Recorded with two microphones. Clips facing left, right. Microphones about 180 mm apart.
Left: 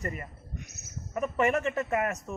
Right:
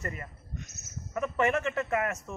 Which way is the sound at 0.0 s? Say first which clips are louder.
Left 2 dB; 15° left (ahead or behind).